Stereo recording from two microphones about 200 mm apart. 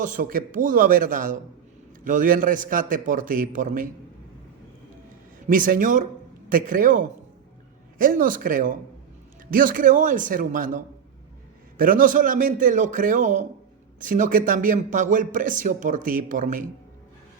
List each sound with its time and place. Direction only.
0.0 s a man's voice: 40° right (ahead or behind)
5.5 s a man's voice: 45° right (ahead or behind)